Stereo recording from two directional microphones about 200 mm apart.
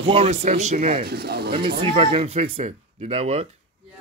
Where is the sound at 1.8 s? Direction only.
30° right (ahead or behind).